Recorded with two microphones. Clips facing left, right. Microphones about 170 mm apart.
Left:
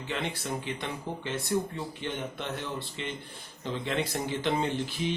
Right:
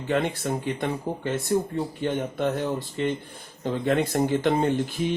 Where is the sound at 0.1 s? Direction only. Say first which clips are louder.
Right 9 dB; 50° right (ahead or behind).